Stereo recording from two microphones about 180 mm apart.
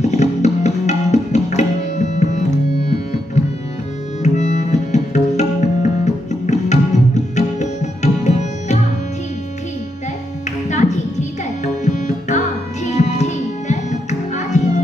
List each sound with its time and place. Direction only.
0.0 s music: 40° left (ahead or behind)
4.2 s music: 40° left (ahead or behind)
10.7 s tabla: 40° left (ahead or behind)
12.9 s music: 40° left (ahead or behind)